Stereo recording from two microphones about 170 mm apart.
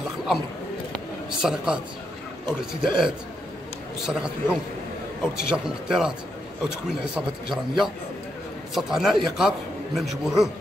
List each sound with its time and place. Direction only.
1.4 s a man's voice: 5° right (ahead or behind)